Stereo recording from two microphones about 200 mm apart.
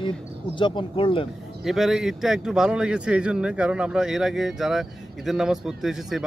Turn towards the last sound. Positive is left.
turn(degrees=0)  # may be behind; listen again after turning